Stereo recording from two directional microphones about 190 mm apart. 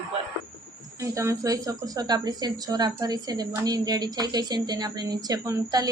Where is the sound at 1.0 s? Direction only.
15° right (ahead or behind).